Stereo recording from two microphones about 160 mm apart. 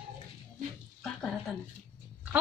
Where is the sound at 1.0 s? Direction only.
5° left (ahead or behind).